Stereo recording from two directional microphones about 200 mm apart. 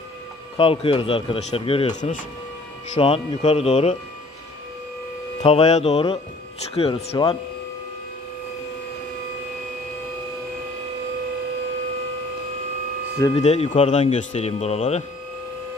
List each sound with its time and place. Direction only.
0.6 s speech: 25° left (ahead or behind)
5.4 s speech: 30° left (ahead or behind)
13.3 s speech: 30° left (ahead or behind)